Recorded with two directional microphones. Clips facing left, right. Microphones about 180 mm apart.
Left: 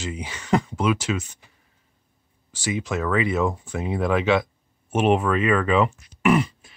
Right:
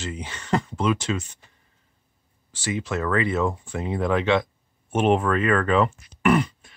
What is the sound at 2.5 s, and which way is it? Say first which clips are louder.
Speech: left 1 dB; 15° left (ahead or behind).